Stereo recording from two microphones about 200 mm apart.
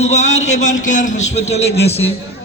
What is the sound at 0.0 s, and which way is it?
A man's voice, 35° left (ahead or behind).